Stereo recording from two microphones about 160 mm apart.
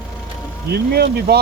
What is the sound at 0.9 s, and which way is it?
Speech, 90° right.